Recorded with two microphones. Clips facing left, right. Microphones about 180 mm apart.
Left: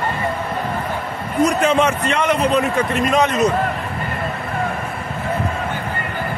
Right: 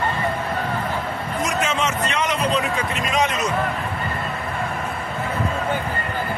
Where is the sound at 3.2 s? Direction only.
60° left (ahead or behind).